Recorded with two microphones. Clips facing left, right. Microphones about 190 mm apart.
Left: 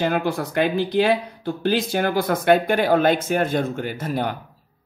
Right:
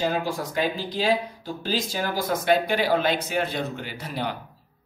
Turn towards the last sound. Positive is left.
turn(degrees=50)  # may be behind; listen again after turning